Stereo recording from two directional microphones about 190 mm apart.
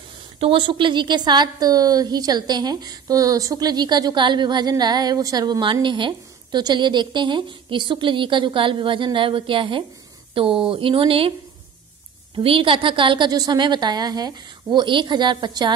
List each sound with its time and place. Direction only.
0.4 s a woman's voice: 25° right (ahead or behind)
12.4 s a woman's voice: 30° right (ahead or behind)